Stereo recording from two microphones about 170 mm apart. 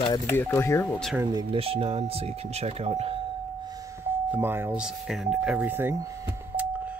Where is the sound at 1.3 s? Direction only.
25° right (ahead or behind).